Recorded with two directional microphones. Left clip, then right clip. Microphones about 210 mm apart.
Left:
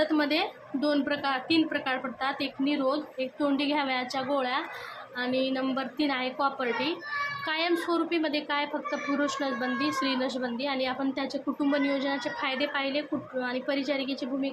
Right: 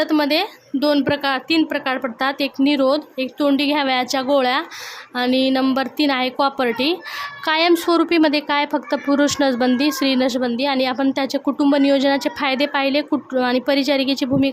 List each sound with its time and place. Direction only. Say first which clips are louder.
0.0 s a woman's voice: right 8 dB; 55° right (ahead or behind)